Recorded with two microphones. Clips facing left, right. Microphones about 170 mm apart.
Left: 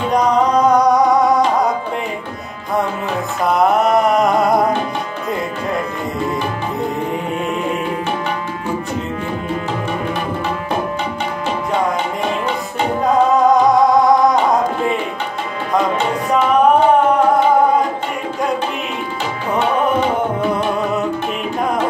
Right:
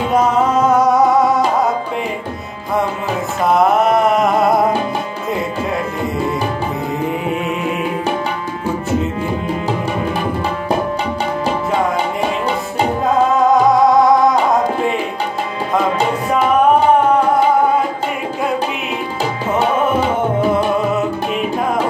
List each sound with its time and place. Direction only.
0.1 s music: 5° right (ahead or behind)
3.4 s a sound: centre (ahead or behind)
13.0 s music: centre (ahead or behind)